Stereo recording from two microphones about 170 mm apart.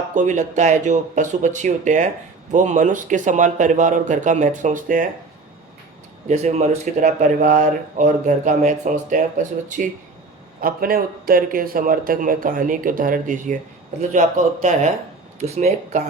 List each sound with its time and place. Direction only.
0.1 s speech: 45° right (ahead or behind)
6.2 s speech: 40° right (ahead or behind)
10.6 s speech: 60° right (ahead or behind); by 16.0 s 40° right (ahead or behind)